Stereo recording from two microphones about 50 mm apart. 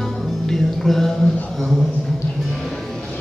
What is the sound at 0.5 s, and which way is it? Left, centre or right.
Speech, centre.